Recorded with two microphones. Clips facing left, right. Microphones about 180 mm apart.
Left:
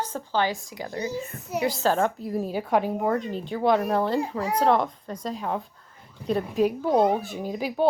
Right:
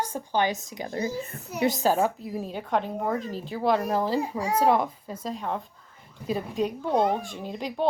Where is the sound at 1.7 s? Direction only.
10° right (ahead or behind).